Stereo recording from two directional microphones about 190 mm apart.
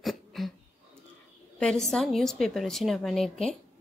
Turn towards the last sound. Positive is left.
turn(degrees=0)  # may be behind; listen again after turning